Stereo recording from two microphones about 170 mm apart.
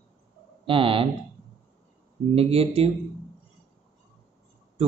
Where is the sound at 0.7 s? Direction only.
30° right (ahead or behind).